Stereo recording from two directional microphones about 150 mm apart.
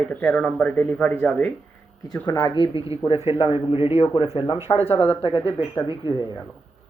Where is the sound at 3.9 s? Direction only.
40° left (ahead or behind).